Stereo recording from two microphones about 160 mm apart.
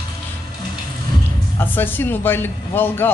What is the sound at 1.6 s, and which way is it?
A man's voice, 10° left (ahead or behind).